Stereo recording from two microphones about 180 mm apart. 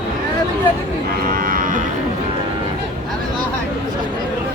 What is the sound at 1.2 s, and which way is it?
Cattle, 55° right (ahead or behind).